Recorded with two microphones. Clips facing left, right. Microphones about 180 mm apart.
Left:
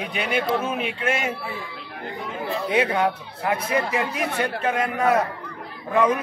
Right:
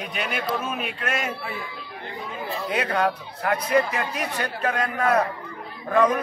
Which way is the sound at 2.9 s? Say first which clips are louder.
Left 1 dB; 25° left (ahead or behind).